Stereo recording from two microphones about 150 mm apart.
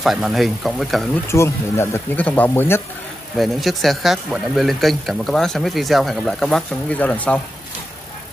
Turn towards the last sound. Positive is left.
turn(degrees=10)  # may be behind; listen again after turning